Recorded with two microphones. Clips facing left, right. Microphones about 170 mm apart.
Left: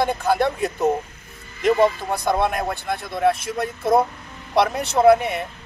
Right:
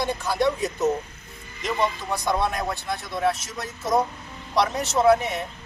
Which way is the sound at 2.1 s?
55° left (ahead or behind).